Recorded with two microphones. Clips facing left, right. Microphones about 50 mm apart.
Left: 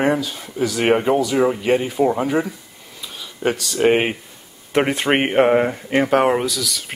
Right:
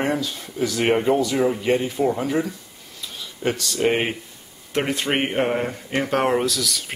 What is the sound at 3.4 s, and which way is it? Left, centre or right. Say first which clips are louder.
Speech: left 3 dB; centre.